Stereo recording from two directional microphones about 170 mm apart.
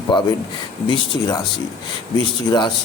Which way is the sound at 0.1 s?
25° left (ahead or behind).